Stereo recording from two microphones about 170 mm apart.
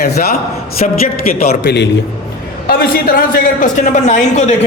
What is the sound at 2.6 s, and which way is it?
A man's voice, 60° left (ahead or behind).